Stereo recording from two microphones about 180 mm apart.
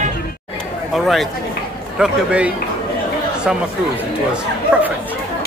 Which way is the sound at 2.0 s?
5° right (ahead or behind).